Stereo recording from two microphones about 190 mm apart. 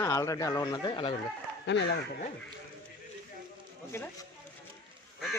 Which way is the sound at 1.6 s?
65° left (ahead or behind).